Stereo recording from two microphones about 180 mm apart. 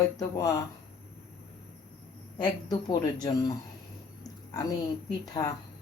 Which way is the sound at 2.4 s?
20° left (ahead or behind).